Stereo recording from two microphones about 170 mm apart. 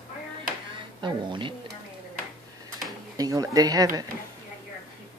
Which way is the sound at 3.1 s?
20° right (ahead or behind).